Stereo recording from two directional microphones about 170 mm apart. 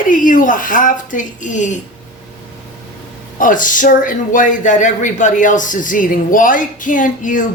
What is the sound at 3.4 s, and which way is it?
Speech, 50° left (ahead or behind).